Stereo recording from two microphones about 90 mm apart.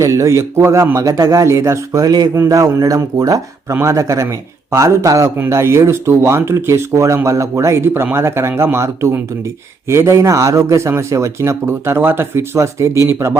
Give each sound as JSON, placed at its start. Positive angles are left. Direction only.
{"t": 0.0, "sound": "a man's voice", "side_deg": -35}
{"t": 2.3, "sound": "a man's voice", "side_deg": -35}